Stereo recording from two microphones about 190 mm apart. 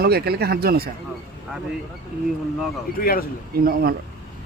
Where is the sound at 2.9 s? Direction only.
50° left (ahead or behind).